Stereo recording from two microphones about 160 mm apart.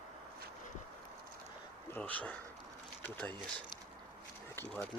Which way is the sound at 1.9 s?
10° left (ahead or behind).